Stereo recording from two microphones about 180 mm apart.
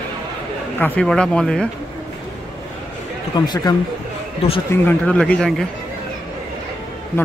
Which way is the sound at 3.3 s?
25° left (ahead or behind).